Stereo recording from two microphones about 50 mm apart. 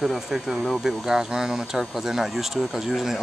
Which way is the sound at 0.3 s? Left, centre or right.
Centre.